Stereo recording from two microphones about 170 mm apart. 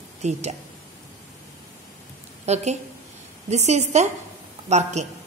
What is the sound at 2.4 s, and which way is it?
A woman's voice, 40° right (ahead or behind).